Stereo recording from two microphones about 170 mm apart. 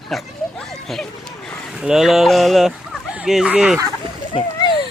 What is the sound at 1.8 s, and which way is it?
Speech, 5° right (ahead or behind).